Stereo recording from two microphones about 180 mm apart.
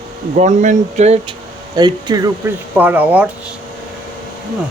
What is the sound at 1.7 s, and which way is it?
Speech, 25° right (ahead or behind).